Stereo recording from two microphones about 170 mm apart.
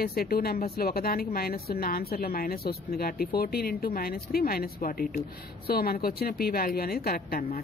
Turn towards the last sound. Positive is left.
turn(degrees=60)  # may be behind; listen again after turning